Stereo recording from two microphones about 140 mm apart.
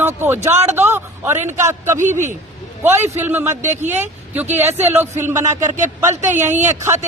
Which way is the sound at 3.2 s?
15° right (ahead or behind).